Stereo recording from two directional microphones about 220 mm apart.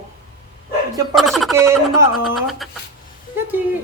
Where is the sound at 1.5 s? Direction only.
10° right (ahead or behind).